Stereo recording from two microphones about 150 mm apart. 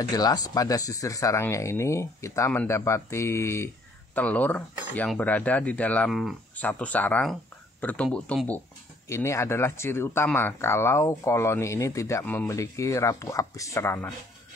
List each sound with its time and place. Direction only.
0.0 s speech: 25° left (ahead or behind); by 8.5 s 5° left (ahead or behind)
9.1 s speech: 20° left (ahead or behind)